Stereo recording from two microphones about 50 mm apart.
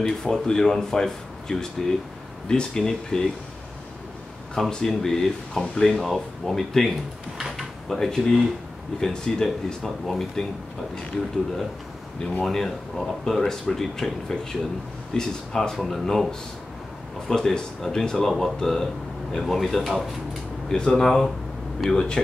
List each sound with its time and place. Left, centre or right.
0.0 s speech: centre
4.6 s speech: centre
7.5 s drawer open or close: centre
9.0 s speech: centre
12.4 s speech: centre
20.6 s speech: centre
20.9 s speech: centre
21.9 s speech: centre